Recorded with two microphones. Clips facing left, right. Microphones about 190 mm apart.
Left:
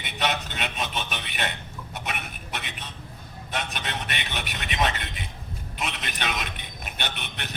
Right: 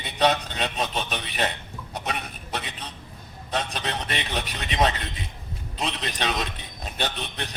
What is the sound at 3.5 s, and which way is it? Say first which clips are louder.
A man's voice: right 3 dB; 35° right (ahead or behind).